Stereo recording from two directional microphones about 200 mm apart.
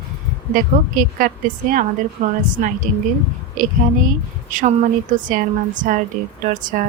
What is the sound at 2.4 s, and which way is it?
A woman's voice, 40° right (ahead or behind).